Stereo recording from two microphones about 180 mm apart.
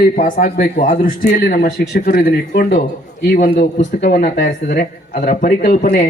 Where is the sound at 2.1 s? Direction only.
65° left (ahead or behind); by 6.1 s 45° left (ahead or behind).